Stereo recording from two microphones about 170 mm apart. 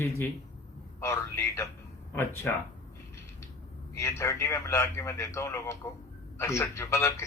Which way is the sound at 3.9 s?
15° left (ahead or behind).